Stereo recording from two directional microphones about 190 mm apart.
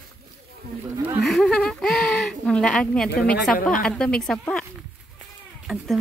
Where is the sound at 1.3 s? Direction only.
Centre (ahead or behind).